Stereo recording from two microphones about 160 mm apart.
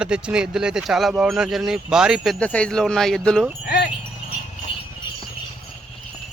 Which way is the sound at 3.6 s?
70° left (ahead or behind).